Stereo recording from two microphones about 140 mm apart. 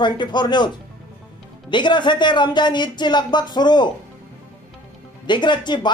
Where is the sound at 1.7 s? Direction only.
35° left (ahead or behind).